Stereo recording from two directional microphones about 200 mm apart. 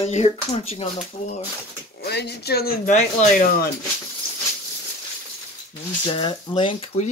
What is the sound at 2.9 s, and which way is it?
Speech, 40° left (ahead or behind).